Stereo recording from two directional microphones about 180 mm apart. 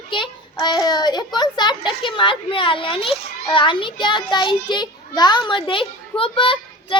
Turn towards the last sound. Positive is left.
turn(degrees=30)  # may be behind; listen again after turning